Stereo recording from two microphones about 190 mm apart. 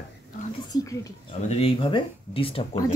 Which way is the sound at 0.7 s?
15° left (ahead or behind).